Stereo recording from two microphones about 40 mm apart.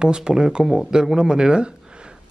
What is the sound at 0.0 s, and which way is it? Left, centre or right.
Speech, centre.